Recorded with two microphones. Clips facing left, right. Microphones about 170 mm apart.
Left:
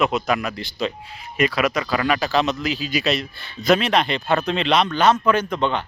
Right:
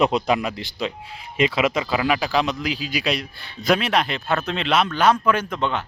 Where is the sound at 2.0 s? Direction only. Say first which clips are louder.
Left 1 dB; 10° right (ahead or behind).